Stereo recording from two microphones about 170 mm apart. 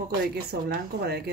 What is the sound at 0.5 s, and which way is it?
Speech, 65° right (ahead or behind).